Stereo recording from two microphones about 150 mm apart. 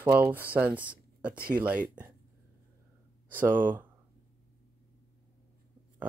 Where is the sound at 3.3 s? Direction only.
15° right (ahead or behind).